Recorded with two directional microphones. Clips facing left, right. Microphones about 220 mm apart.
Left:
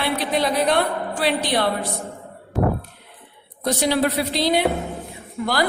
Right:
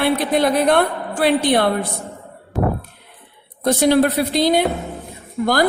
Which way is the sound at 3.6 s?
50° right (ahead or behind).